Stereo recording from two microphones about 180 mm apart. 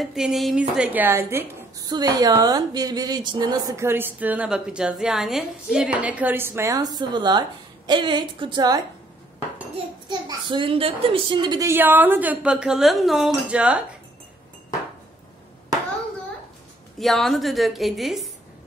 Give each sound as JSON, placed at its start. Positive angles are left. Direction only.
{"t": 0.0, "sound": "a woman's voice", "side_deg": 0}
{"t": 10.0, "sound": "a woman's voice", "side_deg": -25}
{"t": 17.0, "sound": "a woman's voice", "side_deg": 0}